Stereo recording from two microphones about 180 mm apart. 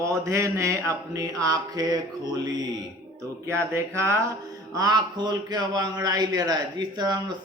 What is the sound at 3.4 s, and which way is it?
A man's voice, 15° right (ahead or behind).